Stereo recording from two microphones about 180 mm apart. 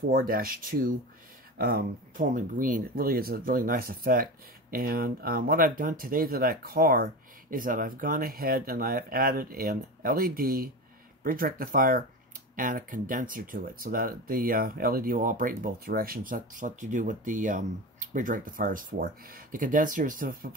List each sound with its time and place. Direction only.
0.1 s speech: 50° right (ahead or behind)